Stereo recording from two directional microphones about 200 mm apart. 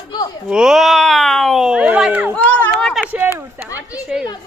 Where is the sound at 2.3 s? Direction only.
10° left (ahead or behind).